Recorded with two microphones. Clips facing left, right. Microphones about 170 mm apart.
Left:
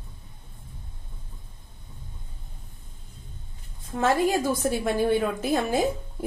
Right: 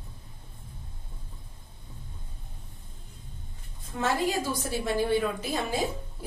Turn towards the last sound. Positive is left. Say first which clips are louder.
# left 6 dB
turn(degrees=50)  # may be behind; listen again after turning